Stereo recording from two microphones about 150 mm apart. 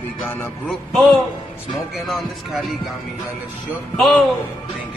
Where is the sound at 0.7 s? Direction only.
Centre (ahead or behind).